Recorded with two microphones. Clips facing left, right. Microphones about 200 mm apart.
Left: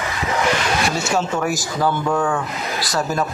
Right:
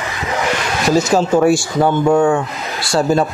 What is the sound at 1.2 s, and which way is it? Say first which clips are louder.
Speech: right 9 dB; 30° right (ahead or behind).